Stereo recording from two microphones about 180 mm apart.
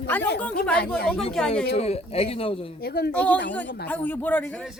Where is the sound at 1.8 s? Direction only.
35° left (ahead or behind).